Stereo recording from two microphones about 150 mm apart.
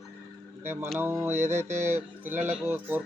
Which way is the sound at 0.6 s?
15° right (ahead or behind).